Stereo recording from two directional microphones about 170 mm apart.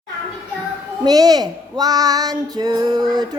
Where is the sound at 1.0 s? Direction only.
20° right (ahead or behind).